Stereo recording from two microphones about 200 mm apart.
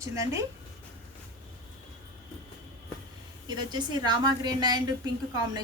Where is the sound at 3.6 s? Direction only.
20° right (ahead or behind).